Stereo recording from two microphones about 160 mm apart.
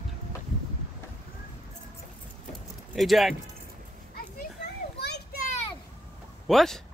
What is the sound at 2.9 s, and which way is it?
Speech, centre (ahead or behind).